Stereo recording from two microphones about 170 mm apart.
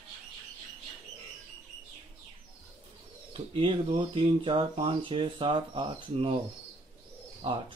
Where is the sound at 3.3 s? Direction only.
30° right (ahead or behind).